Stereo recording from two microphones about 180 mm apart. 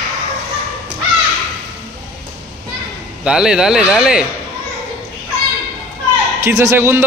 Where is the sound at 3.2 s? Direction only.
5° right (ahead or behind).